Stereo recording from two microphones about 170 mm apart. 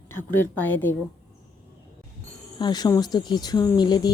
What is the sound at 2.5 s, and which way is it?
Speech, 25° left (ahead or behind).